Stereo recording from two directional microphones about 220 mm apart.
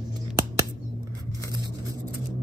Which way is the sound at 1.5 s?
20° right (ahead or behind).